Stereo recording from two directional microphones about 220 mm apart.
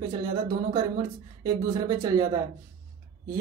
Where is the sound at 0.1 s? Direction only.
20° right (ahead or behind).